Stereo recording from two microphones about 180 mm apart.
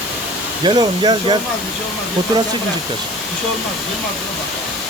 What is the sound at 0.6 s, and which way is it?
Speech, 25° right (ahead or behind).